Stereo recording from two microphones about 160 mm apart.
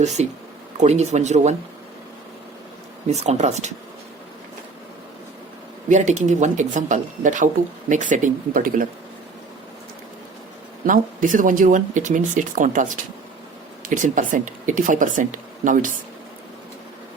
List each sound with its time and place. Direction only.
0.0 s speech: 45° right (ahead or behind)
3.1 s speech: 45° right (ahead or behind)
5.9 s speech: 50° right (ahead or behind)
10.8 s speech: 55° right (ahead or behind)
13.9 s speech: 55° right (ahead or behind)